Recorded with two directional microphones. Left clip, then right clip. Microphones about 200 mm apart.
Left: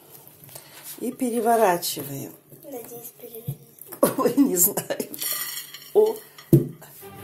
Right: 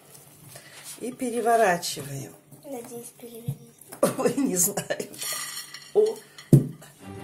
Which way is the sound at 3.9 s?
10° left (ahead or behind).